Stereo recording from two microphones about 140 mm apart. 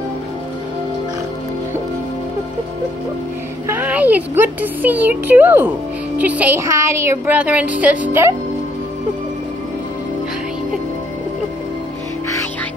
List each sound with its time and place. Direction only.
3.6 s speech: 15° right (ahead or behind)